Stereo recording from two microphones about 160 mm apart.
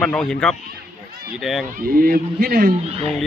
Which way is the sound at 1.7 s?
65° right (ahead or behind).